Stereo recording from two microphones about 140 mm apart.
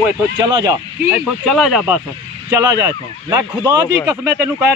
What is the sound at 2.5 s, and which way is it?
Speech, 20° right (ahead or behind).